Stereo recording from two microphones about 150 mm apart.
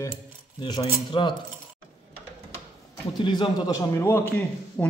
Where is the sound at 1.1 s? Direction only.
35° left (ahead or behind).